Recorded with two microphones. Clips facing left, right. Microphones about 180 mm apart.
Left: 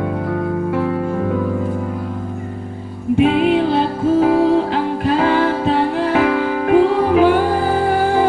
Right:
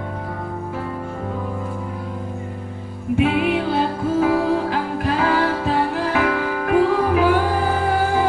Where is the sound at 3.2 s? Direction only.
30° left (ahead or behind).